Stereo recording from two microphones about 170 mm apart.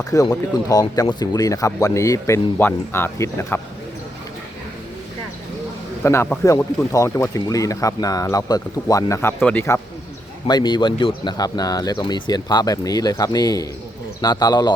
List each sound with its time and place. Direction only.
0.0 s speech: 20° left (ahead or behind)
6.0 s a man's voice: 15° left (ahead or behind)
10.4 s speech: 25° left (ahead or behind)